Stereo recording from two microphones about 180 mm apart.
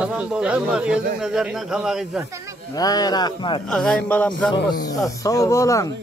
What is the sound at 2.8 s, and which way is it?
Speech, 20° left (ahead or behind).